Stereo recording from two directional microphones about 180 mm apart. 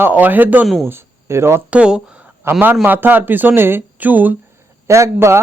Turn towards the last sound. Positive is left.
turn(degrees=-15)  # may be behind; listen again after turning